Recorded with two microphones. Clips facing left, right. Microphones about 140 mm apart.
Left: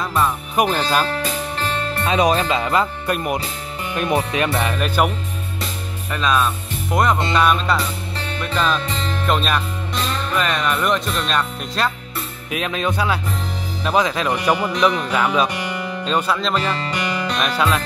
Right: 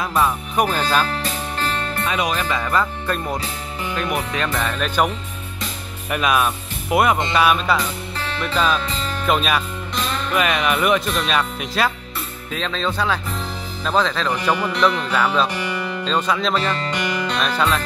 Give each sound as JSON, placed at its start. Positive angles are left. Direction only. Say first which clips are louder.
{"t": 0.0, "sound": "speech", "louder": "even", "side_deg": 0}
{"t": 0.7, "sound": "speech", "louder": "left 1 dB", "side_deg": 10}
{"t": 2.0, "sound": "speech", "louder": "left 7 dB", "side_deg": 35}
{"t": 2.4, "sound": "speech", "louder": "left 2 dB", "side_deg": 20}
{"t": 4.7, "sound": "speech", "louder": "right 1 dB", "side_deg": 5}
{"t": 6.0, "sound": "speech", "louder": "even", "side_deg": -10}
{"t": 12.4, "sound": "speech", "louder": "left 2 dB", "side_deg": 10}